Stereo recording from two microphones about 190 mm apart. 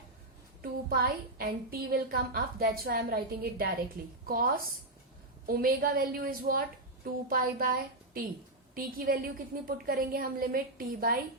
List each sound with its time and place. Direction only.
0.6 s a woman's voice: 50° right (ahead or behind)